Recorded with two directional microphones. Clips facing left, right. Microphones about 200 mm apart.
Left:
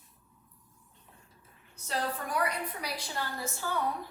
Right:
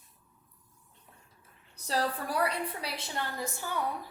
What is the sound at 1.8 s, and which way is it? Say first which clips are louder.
A woman's voice: right 3 dB; 35° right (ahead or behind).